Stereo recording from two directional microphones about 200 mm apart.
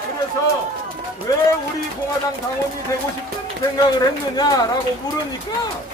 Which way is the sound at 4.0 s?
20° left (ahead or behind).